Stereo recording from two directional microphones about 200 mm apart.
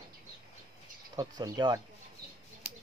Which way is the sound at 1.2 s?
20° right (ahead or behind).